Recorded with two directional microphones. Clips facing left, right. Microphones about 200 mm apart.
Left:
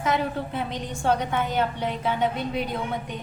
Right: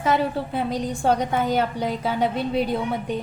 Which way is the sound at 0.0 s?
35° right (ahead or behind).